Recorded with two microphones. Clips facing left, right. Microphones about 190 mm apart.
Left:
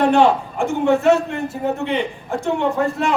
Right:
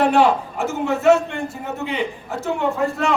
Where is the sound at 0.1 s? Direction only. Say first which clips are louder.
Left 2 dB; 5° right (ahead or behind).